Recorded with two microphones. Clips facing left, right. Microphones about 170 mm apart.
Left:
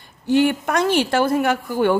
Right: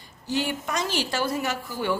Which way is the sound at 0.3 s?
60° left (ahead or behind).